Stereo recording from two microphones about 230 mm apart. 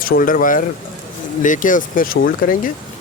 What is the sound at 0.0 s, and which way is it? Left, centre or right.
Speech, left.